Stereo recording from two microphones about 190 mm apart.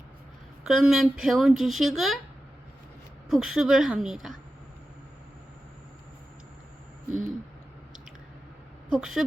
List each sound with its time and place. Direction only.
0.6 s speech: 5° right (ahead or behind)
3.2 s speech: centre (ahead or behind)
8.9 s speech: centre (ahead or behind)